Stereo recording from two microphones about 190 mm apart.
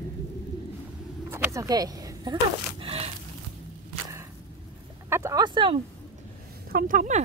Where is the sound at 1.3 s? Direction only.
15° right (ahead or behind).